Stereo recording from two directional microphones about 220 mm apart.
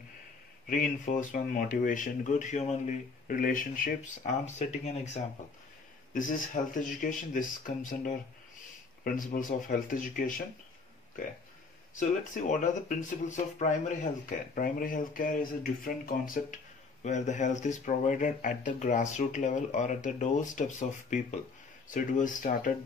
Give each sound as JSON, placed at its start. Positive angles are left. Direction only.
{"t": 0.7, "sound": "speech", "side_deg": 35}
{"t": 9.5, "sound": "speech", "side_deg": 35}
{"t": 11.9, "sound": "speech", "side_deg": 35}